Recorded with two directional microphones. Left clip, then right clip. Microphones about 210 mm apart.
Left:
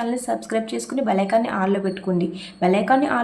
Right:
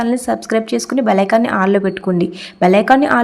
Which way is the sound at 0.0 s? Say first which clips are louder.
Right 7 dB; 30° right (ahead or behind).